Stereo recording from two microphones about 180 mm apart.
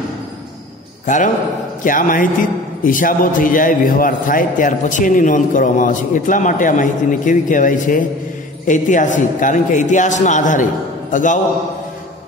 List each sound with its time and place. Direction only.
1.0 s a man's voice: 45° left (ahead or behind)